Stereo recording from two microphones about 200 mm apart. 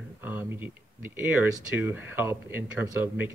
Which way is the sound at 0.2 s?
10° right (ahead or behind).